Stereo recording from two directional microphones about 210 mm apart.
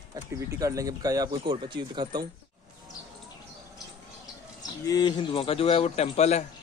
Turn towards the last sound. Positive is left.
turn(degrees=30)  # may be behind; listen again after turning